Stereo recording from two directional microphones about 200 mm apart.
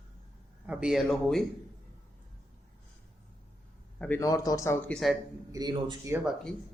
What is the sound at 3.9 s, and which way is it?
Speech, 5° left (ahead or behind).